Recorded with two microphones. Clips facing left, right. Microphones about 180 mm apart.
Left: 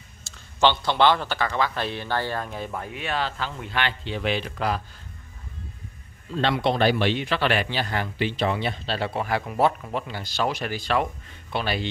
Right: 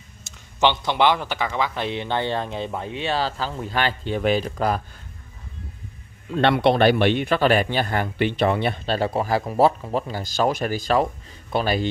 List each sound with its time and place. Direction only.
0.3 s a sound: 20° right (ahead or behind)
0.6 s speech: 15° right (ahead or behind); by 4.8 s 45° right (ahead or behind)
6.3 s a man's voice: 60° right (ahead or behind); by 11.9 s 45° right (ahead or behind)